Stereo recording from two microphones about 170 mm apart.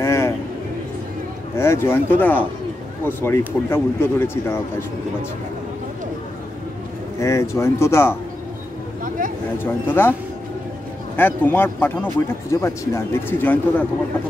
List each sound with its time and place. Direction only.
0.0 s a sound: 20° left (ahead or behind)
1.6 s speech: 15° left (ahead or behind)
7.2 s speech: 15° left (ahead or behind)
9.6 s speech: 10° left (ahead or behind)
11.1 s speech: 10° left (ahead or behind)